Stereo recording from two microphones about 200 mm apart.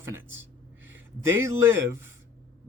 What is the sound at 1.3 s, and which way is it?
Speech, 15° right (ahead or behind).